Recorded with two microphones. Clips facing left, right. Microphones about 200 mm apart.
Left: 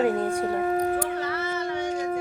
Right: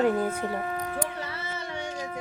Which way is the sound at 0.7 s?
45° left (ahead or behind).